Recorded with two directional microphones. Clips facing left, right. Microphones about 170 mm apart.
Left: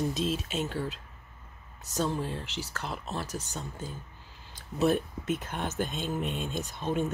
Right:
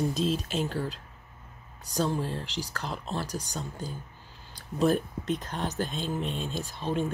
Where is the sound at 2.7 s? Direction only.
5° left (ahead or behind).